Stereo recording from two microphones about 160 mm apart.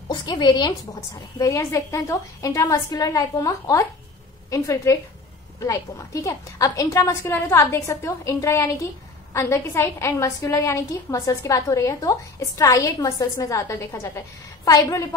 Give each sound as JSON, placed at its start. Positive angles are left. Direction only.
{"t": 0.1, "sound": "a woman's voice", "side_deg": 30}